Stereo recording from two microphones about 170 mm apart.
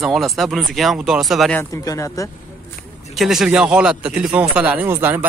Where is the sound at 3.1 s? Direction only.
Centre (ahead or behind).